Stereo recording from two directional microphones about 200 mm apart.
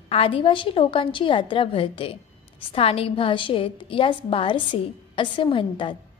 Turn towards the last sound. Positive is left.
turn(degrees=25)  # may be behind; listen again after turning